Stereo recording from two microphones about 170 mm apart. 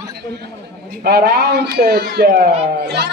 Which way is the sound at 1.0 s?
65° right (ahead or behind).